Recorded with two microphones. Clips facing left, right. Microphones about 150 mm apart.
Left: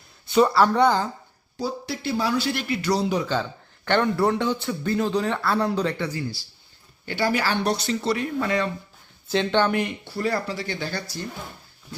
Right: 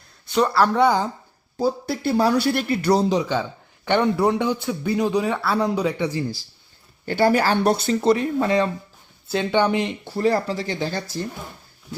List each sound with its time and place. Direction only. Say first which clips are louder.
0.3 s a man's voice: left 1 dB; centre (ahead or behind)
1.5 s speech: right 6 dB; 50° right (ahead or behind)
3.1 s a man's voice: right 3 dB; 20° right (ahead or behind)
7.0 s speech: right 6 dB; 45° right (ahead or behind)
9.3 s a man's voice: right 1 dB; 10° right (ahead or behind)
10.0 s speech: right 5 dB; 35° right (ahead or behind)
10.7 s speech: right 4 dB; 25° right (ahead or behind)